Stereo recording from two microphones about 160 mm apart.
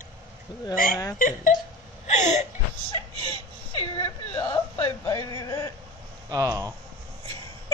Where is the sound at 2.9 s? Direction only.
30° right (ahead or behind).